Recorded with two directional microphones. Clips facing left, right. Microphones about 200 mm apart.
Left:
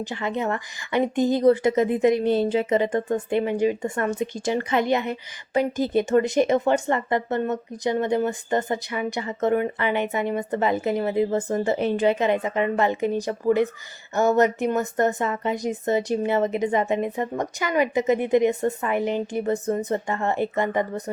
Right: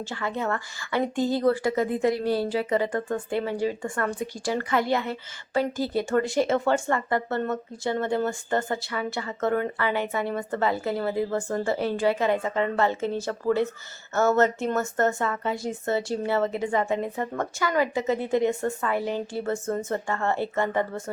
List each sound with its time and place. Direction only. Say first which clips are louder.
0.0 s speech: left 3 dB; 20° left (ahead or behind)